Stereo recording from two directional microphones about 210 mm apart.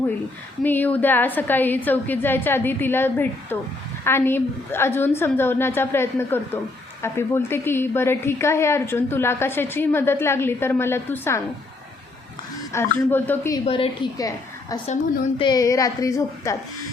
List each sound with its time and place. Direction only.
0.6 s a woman's voice: 10° left (ahead or behind)
12.7 s a woman's voice: 10° left (ahead or behind)
13.7 s a woman's voice: 25° left (ahead or behind)